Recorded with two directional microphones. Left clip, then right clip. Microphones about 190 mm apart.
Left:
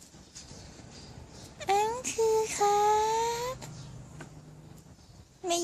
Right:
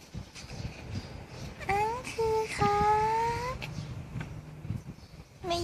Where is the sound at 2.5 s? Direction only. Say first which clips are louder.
Right 1 dB; 40° left (ahead or behind).